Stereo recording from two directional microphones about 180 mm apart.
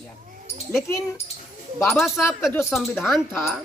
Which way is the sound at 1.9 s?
Centre (ahead or behind).